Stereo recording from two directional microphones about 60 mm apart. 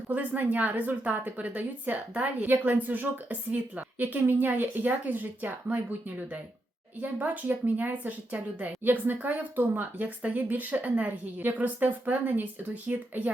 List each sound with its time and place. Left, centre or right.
0.1 s a woman's voice: right